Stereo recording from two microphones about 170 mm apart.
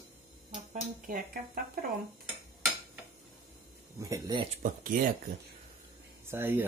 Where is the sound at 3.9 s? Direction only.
20° right (ahead or behind).